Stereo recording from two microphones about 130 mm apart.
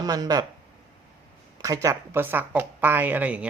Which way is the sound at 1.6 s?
25° right (ahead or behind).